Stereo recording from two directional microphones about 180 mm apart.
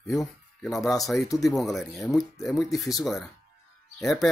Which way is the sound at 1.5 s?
Centre (ahead or behind).